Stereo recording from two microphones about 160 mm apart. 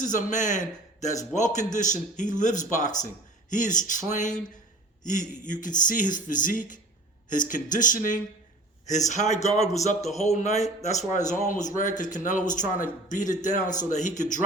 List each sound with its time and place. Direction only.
0.0 s a man's voice: 55° left (ahead or behind)